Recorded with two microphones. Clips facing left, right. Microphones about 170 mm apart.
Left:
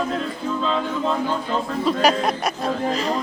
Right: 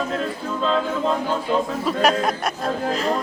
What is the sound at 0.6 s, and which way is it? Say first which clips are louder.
Speech: right 3 dB; centre (ahead or behind).